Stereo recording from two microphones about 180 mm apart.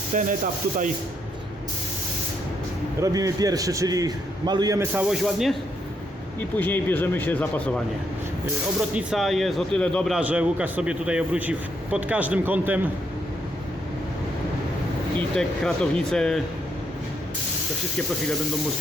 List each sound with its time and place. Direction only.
0.1 s speech: 45° right (ahead or behind)
3.0 s a man's voice: 20° right (ahead or behind); by 5.5 s centre (ahead or behind)
6.6 s a man's voice: 10° left (ahead or behind)
9.0 s speech: 5° right (ahead or behind)
10.2 s a man's voice: 5° right (ahead or behind)
15.4 s speech: 5° left (ahead or behind)